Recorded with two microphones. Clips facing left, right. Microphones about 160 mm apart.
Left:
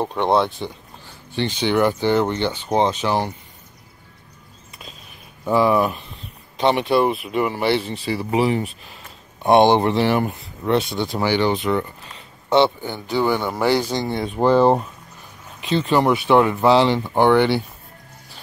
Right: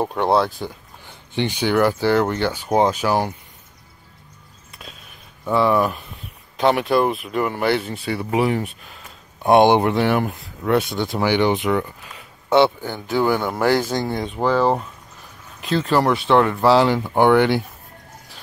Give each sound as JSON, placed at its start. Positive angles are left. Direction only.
{"t": 0.0, "sound": "speech", "side_deg": -5}
{"t": 1.0, "sound": "speech", "side_deg": -15}
{"t": 5.4, "sound": "speech", "side_deg": 10}
{"t": 9.9, "sound": "speech", "side_deg": 0}
{"t": 11.2, "sound": "speech", "side_deg": -15}
{"t": 14.2, "sound": "speech", "side_deg": 15}
{"t": 15.6, "sound": "speech", "side_deg": 0}